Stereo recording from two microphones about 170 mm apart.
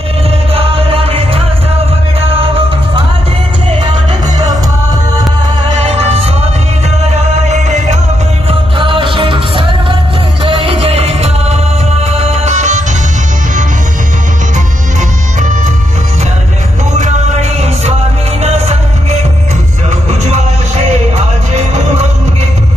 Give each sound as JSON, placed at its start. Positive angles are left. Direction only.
{"t": 0.6, "sound": "music", "side_deg": -35}
{"t": 5.8, "sound": "music", "side_deg": -35}
{"t": 7.4, "sound": "music", "side_deg": -45}
{"t": 8.5, "sound": "music", "side_deg": -30}
{"t": 16.9, "sound": "music", "side_deg": -40}